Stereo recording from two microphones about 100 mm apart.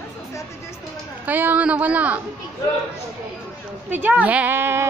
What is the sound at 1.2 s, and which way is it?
A woman's voice, 15° right (ahead or behind).